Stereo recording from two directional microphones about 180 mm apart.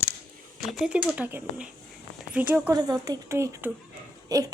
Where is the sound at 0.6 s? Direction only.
Centre (ahead or behind); by 4.4 s 20° right (ahead or behind).